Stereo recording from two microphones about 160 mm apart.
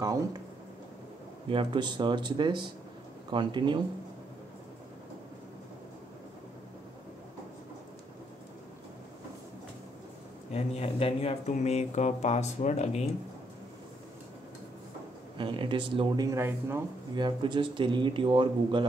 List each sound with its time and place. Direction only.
0.0 s speech: 20° right (ahead or behind)
1.5 s speech: 30° right (ahead or behind)
10.5 s speech: 40° left (ahead or behind)
15.3 s speech: 30° right (ahead or behind); by 16.8 s 15° right (ahead or behind)
17.1 s speech: 30° right (ahead or behind)